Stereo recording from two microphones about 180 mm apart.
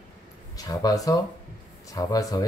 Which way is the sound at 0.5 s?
20° left (ahead or behind).